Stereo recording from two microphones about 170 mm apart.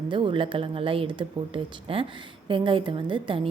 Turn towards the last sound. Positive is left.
turn(degrees=-30)  # may be behind; listen again after turning